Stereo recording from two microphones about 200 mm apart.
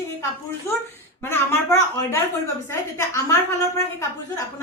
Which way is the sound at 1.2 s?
15° left (ahead or behind).